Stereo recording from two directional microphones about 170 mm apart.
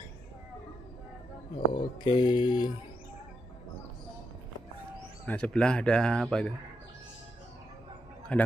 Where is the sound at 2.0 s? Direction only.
25° left (ahead or behind).